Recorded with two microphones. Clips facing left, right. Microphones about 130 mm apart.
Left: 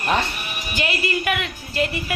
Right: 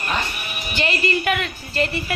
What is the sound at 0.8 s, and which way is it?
A woman's voice, 10° left (ahead or behind).